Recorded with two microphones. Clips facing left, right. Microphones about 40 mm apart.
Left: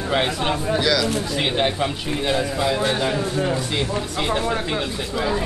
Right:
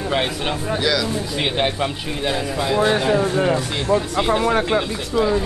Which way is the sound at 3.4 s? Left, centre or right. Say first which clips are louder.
Right 4 dB; right.